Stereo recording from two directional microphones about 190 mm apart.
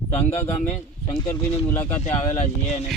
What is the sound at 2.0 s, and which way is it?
Speech, 35° left (ahead or behind).